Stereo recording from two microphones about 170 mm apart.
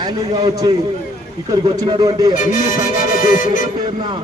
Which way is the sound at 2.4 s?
50° left (ahead or behind).